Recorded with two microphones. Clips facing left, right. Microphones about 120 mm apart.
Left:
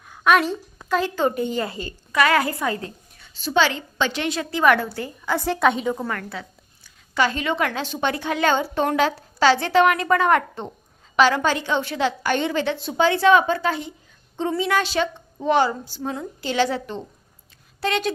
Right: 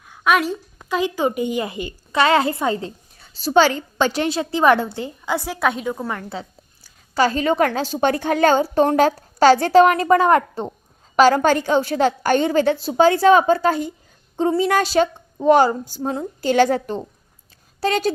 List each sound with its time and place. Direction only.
0.1 s a woman's voice: 5° right (ahead or behind)
6.1 s a woman's voice: 25° right (ahead or behind)